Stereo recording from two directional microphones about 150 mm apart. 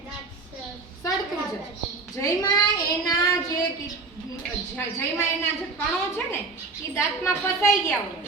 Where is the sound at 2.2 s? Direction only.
25° left (ahead or behind).